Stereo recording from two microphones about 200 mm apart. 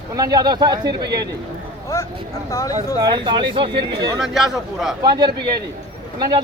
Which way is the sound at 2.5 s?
15° left (ahead or behind).